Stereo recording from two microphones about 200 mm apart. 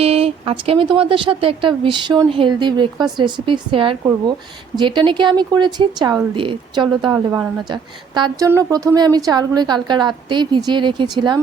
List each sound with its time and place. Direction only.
0.0 s speech: 30° right (ahead or behind)